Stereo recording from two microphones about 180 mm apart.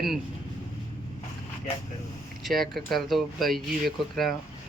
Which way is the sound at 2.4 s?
Centre (ahead or behind).